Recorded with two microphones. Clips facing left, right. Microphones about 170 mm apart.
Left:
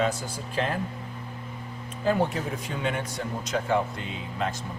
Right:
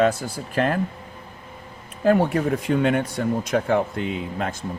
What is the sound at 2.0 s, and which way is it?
Speech, 60° right (ahead or behind).